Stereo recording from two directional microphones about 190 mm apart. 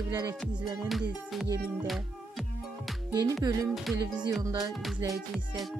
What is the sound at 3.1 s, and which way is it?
Music, 20° right (ahead or behind).